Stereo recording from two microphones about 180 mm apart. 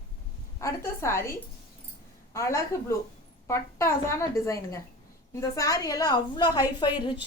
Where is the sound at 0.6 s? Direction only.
15° left (ahead or behind).